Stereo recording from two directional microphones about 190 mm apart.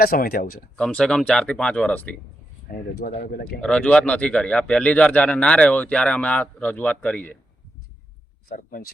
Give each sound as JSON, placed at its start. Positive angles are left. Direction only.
{"t": 0.0, "sound": "speech", "side_deg": 50}
{"t": 0.8, "sound": "speech", "side_deg": 5}
{"t": 3.0, "sound": "speech", "side_deg": 50}
{"t": 3.6, "sound": "a man's voice", "side_deg": 5}
{"t": 8.4, "sound": "speech", "side_deg": 50}